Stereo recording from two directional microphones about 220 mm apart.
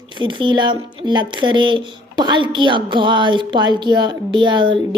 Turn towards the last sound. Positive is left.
turn(degrees=-20)  # may be behind; listen again after turning